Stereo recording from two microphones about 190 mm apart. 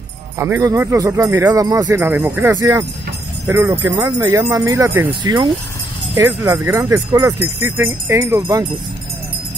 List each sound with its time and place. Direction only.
0.4 s speech: 15° right (ahead or behind)